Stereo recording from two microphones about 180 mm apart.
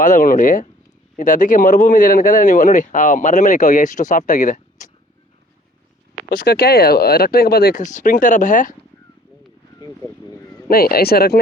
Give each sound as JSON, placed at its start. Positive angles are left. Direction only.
{"t": 0.0, "sound": "a man's voice", "side_deg": 45}
{"t": 6.3, "sound": "speech", "side_deg": 60}
{"t": 10.7, "sound": "speech", "side_deg": 55}